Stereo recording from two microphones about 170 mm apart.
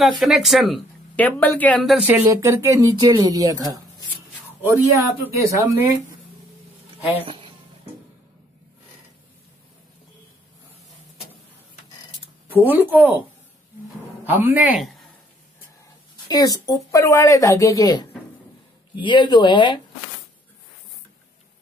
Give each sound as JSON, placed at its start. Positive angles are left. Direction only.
{"t": 0.2, "sound": "speech", "side_deg": 0}
{"t": 2.0, "sound": "speech", "side_deg": -15}
{"t": 7.2, "sound": "a sound", "side_deg": -30}
{"t": 12.6, "sound": "speech", "side_deg": -10}
{"t": 14.2, "sound": "a man's voice", "side_deg": -10}
{"t": 16.3, "sound": "speech", "side_deg": 25}